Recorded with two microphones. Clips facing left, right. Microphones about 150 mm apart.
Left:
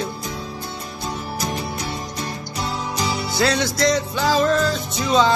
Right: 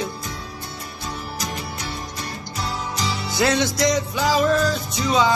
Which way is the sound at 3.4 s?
20° right (ahead or behind).